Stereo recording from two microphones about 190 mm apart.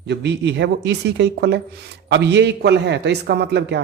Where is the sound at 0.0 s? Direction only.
65° right (ahead or behind).